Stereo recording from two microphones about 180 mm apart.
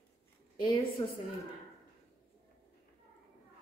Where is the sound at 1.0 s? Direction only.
30° left (ahead or behind).